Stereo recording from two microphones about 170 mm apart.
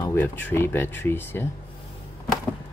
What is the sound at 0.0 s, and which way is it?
Speech, 15° left (ahead or behind).